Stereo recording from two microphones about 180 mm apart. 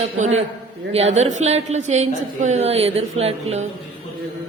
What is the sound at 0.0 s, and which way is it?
A woman's voice, 35° right (ahead or behind).